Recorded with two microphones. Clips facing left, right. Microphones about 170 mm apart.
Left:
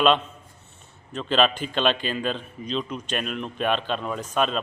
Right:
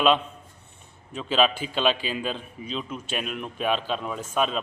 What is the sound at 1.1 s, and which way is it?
A man's voice, 5° right (ahead or behind).